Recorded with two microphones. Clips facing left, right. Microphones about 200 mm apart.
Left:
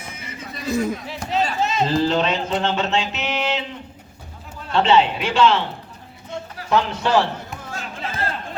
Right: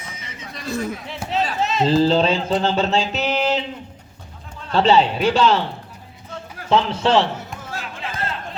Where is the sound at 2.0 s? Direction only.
30° right (ahead or behind).